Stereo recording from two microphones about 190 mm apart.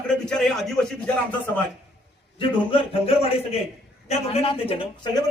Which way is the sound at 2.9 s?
30° left (ahead or behind).